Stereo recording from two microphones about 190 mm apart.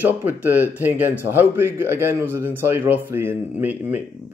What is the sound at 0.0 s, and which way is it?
A man's voice, 10° right (ahead or behind).